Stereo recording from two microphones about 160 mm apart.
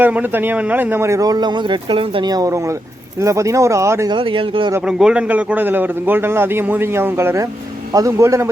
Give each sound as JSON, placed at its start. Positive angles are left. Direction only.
{"t": 0.0, "sound": "speech", "side_deg": -10}
{"t": 4.2, "sound": "speech", "side_deg": -35}
{"t": 4.9, "sound": "a man's voice", "side_deg": -5}